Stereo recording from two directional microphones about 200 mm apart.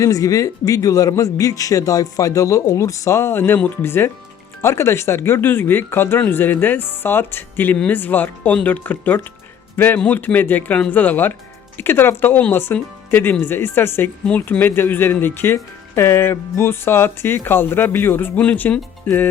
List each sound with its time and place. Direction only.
0.0 s speech: 15° left (ahead or behind)